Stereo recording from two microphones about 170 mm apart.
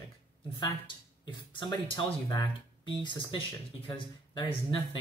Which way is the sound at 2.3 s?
20° left (ahead or behind).